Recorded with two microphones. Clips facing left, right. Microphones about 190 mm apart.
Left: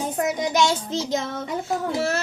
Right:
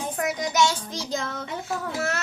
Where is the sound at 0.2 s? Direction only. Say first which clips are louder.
Left 2 dB; 25° left (ahead or behind).